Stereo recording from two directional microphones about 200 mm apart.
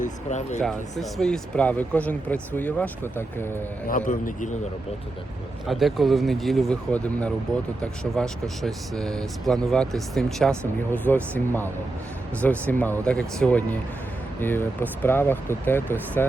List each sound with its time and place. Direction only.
0.0 s a man's voice: 35° left (ahead or behind)
0.6 s speech: centre (ahead or behind)
3.8 s a man's voice: 40° left (ahead or behind)
5.6 s speech: centre (ahead or behind)